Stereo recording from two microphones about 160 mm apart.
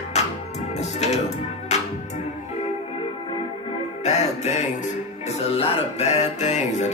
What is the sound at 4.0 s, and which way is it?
Music, 45° left (ahead or behind).